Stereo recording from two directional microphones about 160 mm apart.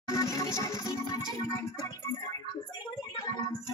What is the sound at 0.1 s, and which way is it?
Music, 20° left (ahead or behind).